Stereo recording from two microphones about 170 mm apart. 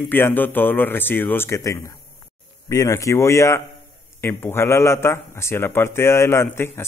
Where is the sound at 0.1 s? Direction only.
10° left (ahead or behind).